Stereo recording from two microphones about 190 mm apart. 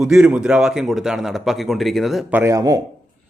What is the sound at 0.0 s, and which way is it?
A man's voice, 5° right (ahead or behind).